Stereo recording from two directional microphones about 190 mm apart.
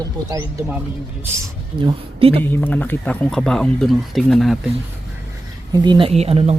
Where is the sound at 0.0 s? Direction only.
20° right (ahead or behind).